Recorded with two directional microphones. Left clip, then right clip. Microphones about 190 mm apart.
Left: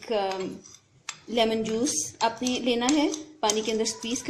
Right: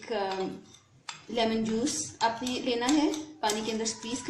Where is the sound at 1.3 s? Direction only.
35° left (ahead or behind).